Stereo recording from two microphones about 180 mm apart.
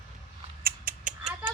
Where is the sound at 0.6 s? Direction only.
55° right (ahead or behind).